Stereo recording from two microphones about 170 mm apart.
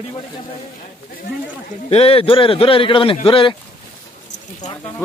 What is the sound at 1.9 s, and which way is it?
A man's voice, 35° left (ahead or behind).